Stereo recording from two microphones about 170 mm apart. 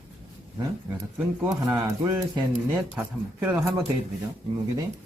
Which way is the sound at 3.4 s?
10° right (ahead or behind).